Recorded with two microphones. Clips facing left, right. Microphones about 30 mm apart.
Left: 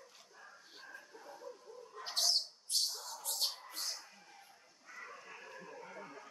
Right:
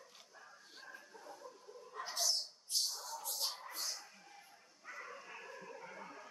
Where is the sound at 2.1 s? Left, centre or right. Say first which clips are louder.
Left 4 dB; left.